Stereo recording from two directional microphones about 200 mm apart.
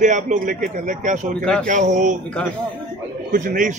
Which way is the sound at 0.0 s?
40° right (ahead or behind).